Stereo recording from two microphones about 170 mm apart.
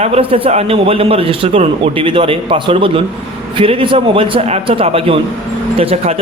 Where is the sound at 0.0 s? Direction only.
35° right (ahead or behind).